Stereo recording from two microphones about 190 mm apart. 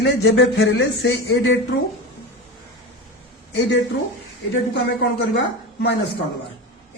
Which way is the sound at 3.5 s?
75° left (ahead or behind).